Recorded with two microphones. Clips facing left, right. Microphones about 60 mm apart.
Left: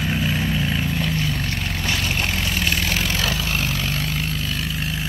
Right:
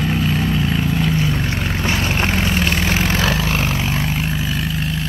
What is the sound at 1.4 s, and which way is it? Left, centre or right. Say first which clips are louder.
Vehicle: right 5 dB; right.